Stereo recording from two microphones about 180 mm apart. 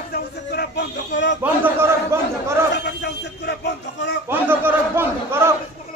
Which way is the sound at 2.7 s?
70° left (ahead or behind).